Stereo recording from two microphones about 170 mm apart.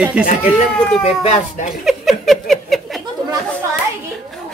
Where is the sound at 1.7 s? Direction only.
Centre (ahead or behind).